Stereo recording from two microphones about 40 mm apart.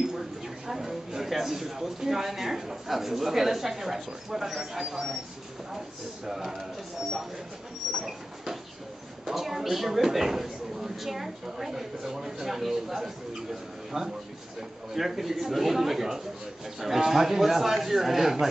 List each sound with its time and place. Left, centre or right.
0.7 s speech: centre
6.2 s speech: centre
7.9 s a sound: centre
9.2 s speech: centre